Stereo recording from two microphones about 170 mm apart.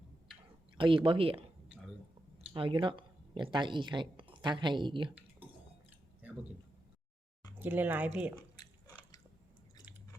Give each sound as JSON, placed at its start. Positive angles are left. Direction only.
{"t": 0.8, "sound": "speech", "side_deg": -30}
{"t": 2.5, "sound": "speech", "side_deg": -30}
{"t": 7.6, "sound": "speech", "side_deg": -10}